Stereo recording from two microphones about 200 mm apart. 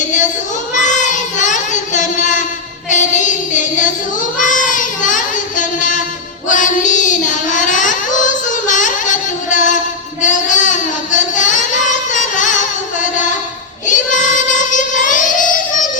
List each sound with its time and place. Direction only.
0.7 s child singing: 40° left (ahead or behind)
13.8 s child singing: 40° left (ahead or behind)